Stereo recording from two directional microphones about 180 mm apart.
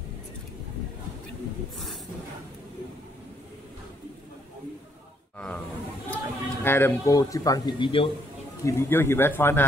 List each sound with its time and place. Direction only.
6.1 s speech: 10° left (ahead or behind); by 8.1 s 30° left (ahead or behind)
8.6 s speech: 15° left (ahead or behind)